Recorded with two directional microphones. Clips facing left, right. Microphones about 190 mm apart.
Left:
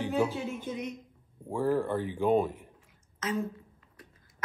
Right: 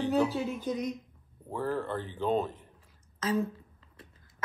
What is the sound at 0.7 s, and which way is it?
Speech, 35° right (ahead or behind).